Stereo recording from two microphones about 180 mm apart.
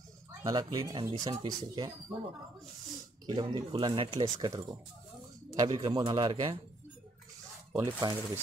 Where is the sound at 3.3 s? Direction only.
25° right (ahead or behind).